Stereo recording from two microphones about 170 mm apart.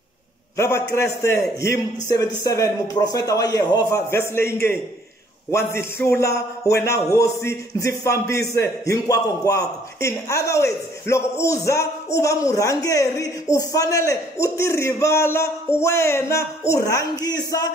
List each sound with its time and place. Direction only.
0.6 s a man's voice: 15° left (ahead or behind)